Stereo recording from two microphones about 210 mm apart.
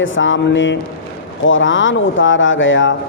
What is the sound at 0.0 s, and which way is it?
Speech, 65° left (ahead or behind).